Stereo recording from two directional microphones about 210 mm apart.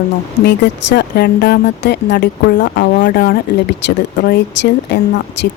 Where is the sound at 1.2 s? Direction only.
50° left (ahead or behind).